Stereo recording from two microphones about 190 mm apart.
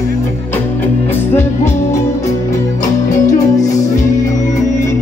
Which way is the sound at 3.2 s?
15° left (ahead or behind).